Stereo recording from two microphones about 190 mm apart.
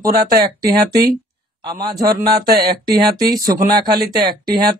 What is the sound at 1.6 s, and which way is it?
Speech, 20° right (ahead or behind).